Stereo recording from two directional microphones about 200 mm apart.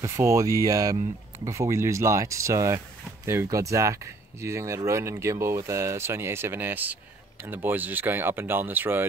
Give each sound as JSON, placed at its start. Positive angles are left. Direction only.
{"t": 0.0, "sound": "speech", "side_deg": -15}